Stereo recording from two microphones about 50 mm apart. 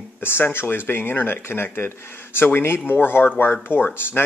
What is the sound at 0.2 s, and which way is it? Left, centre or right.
A man's voice, left.